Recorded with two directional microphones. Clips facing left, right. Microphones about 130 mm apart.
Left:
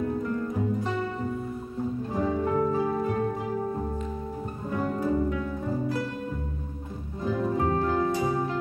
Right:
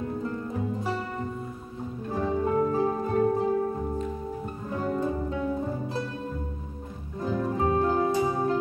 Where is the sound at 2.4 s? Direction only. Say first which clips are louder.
Right 3 dB; 30° right (ahead or behind).